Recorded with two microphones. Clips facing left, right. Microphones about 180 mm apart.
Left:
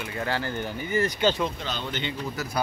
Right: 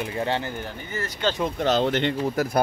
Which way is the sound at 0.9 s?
15° left (ahead or behind).